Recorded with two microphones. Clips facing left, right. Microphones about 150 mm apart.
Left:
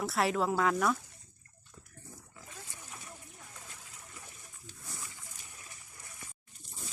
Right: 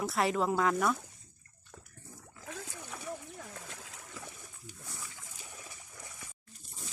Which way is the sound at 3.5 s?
90° right.